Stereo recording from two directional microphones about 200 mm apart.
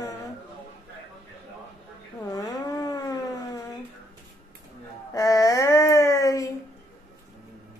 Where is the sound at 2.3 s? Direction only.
20° left (ahead or behind).